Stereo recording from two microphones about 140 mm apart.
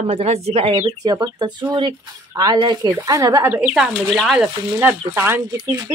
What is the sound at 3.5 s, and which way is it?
Speech, 5° right (ahead or behind).